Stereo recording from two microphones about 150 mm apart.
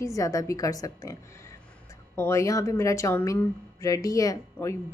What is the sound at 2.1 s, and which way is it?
A woman's voice, 20° left (ahead or behind).